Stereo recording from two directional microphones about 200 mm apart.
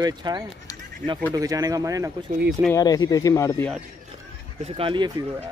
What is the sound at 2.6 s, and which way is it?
Speech, 20° left (ahead or behind).